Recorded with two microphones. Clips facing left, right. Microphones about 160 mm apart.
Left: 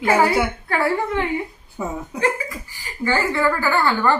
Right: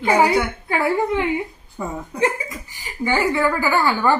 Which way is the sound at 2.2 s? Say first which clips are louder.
Right 1 dB; 20° right (ahead or behind).